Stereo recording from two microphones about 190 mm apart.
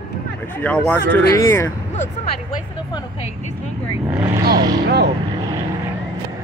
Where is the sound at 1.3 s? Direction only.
20° left (ahead or behind).